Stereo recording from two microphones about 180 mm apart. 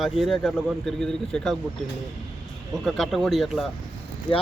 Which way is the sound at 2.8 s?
Centre (ahead or behind).